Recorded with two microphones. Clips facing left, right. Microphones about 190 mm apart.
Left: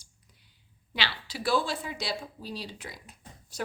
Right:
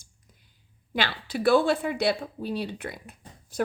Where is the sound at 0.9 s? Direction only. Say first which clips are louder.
Right 7 dB; 50° right (ahead or behind).